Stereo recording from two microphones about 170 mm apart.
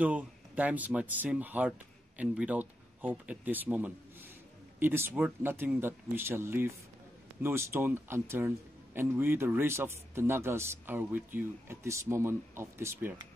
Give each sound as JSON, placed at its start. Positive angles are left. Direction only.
{"t": 0.0, "sound": "speech", "side_deg": -10}